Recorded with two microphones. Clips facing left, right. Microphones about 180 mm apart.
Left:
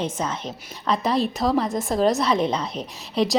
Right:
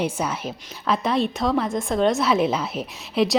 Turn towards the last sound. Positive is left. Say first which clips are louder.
# right 1 dB
turn(degrees=0)  # may be behind; listen again after turning